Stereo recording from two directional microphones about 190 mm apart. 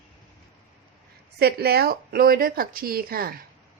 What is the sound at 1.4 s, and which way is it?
Speech, 55° right (ahead or behind).